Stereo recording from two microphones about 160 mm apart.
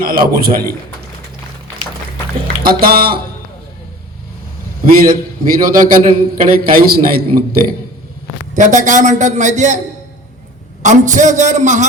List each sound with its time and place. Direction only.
0.0 s a man's voice: 65° right (ahead or behind)
2.6 s a man's voice: 70° right (ahead or behind)
4.9 s a man's voice: 60° right (ahead or behind)
8.5 s a man's voice: 50° right (ahead or behind)
10.8 s a man's voice: 50° right (ahead or behind)